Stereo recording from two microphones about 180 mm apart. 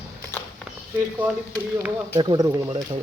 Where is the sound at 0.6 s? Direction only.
10° right (ahead or behind).